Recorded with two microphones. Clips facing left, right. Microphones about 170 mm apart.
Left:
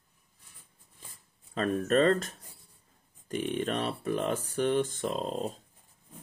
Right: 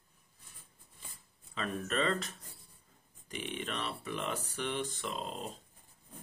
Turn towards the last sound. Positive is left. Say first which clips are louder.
# left 8 dB
turn(degrees=40)  # may be behind; listen again after turning